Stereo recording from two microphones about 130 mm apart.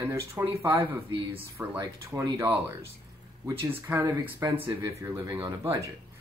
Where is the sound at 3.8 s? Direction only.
25° right (ahead or behind).